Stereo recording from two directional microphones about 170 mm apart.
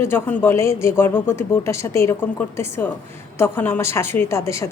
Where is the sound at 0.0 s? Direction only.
15° left (ahead or behind).